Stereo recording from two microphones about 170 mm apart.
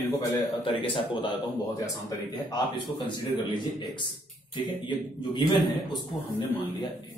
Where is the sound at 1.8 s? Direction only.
20° left (ahead or behind).